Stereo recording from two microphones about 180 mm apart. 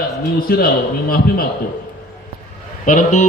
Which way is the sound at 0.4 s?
55° left (ahead or behind).